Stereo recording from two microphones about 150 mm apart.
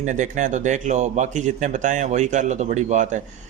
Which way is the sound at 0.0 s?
55° right (ahead or behind).